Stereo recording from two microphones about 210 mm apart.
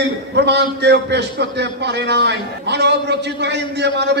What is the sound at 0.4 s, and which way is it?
A man's voice, 55° right (ahead or behind).